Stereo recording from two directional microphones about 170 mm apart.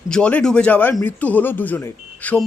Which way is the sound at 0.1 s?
5° left (ahead or behind).